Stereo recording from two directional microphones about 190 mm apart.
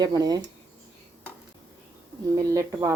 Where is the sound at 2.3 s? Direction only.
15° right (ahead or behind).